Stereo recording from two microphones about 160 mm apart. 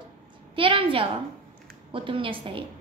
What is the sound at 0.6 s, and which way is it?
A woman's voice, 35° right (ahead or behind).